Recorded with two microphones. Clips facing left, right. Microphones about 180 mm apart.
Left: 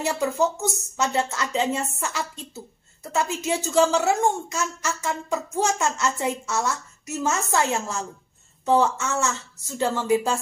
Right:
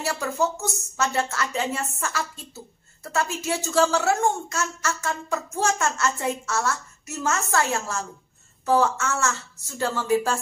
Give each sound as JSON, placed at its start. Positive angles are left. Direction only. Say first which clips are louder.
{"t": 0.0, "sound": "a woman's voice", "louder": "left 2 dB", "side_deg": 15}